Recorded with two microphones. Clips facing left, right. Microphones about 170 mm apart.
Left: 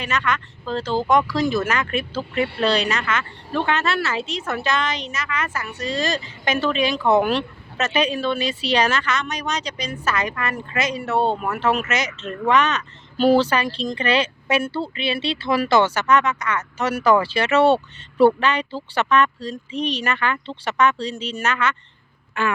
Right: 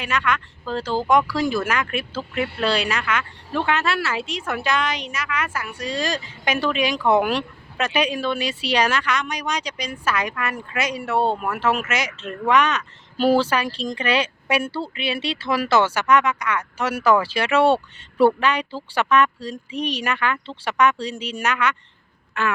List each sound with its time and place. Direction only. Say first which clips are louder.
0.0 s speech: even; 10° right (ahead or behind)
22.4 s speech: left 1 dB; centre (ahead or behind)